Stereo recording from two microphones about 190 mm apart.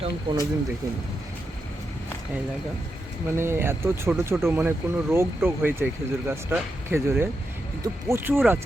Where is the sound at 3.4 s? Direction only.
15° right (ahead or behind).